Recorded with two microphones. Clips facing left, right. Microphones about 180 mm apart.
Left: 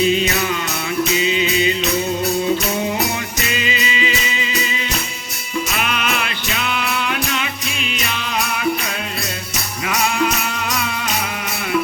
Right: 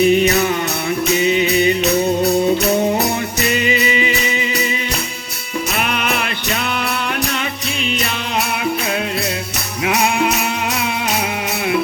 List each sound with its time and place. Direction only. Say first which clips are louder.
0.0 s mantra: right 4 dB; 60° right (ahead or behind)
9.8 s music: right 3 dB; 65° right (ahead or behind)